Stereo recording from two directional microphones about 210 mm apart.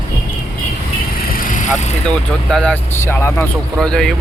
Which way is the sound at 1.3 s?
35° left (ahead or behind).